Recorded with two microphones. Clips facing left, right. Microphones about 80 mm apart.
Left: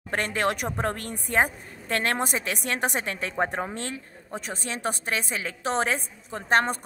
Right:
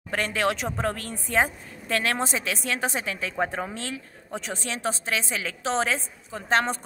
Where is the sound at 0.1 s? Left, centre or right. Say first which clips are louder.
Even; left.